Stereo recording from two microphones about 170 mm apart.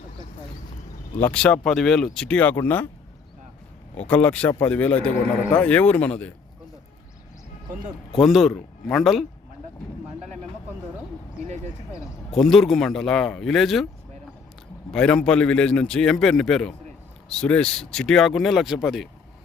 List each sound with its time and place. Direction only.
1.2 s speech: 5° left (ahead or behind)
3.9 s speech: 10° left (ahead or behind)
8.2 s speech: centre (ahead or behind)
11.4 s speech: 45° right (ahead or behind)
12.3 s speech: centre (ahead or behind)
14.9 s speech: 5° left (ahead or behind)